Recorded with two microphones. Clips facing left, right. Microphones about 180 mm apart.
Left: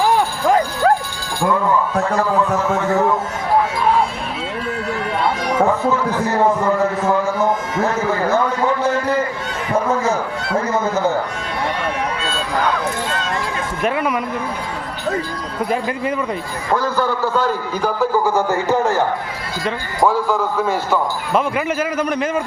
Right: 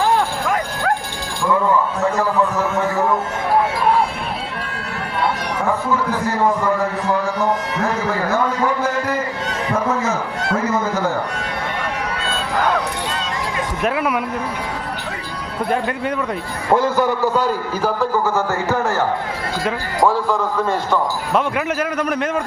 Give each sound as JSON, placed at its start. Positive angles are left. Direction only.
{"t": 0.4, "sound": "clip-clop", "side_deg": 25}
{"t": 13.8, "sound": "a man's voice", "side_deg": 0}
{"t": 15.7, "sound": "a man's voice", "side_deg": 0}
{"t": 16.7, "sound": "a man's voice", "side_deg": -20}
{"t": 18.3, "sound": "a man's voice", "side_deg": 15}
{"t": 20.1, "sound": "a man's voice", "side_deg": 0}